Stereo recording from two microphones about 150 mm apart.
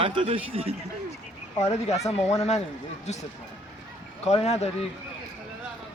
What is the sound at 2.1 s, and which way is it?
Speech, 45° left (ahead or behind).